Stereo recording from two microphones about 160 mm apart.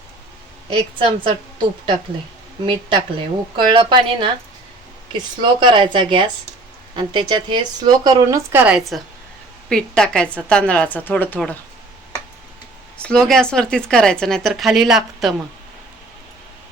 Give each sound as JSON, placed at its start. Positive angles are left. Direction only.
{"t": 0.7, "sound": "a woman's voice", "side_deg": -35}
{"t": 3.5, "sound": "a woman's voice", "side_deg": -30}
{"t": 13.0, "sound": "speech", "side_deg": 5}